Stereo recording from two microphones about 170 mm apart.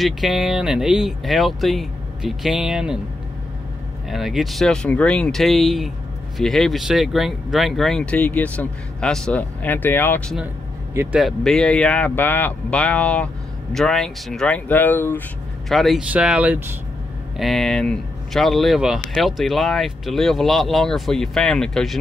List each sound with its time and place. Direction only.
0.0 s speech: centre (ahead or behind)
4.1 s speech: centre (ahead or behind)
11.0 s speech: 5° right (ahead or behind); by 15.2 s 10° left (ahead or behind)
15.7 s speech: centre (ahead or behind)
17.4 s speech: centre (ahead or behind)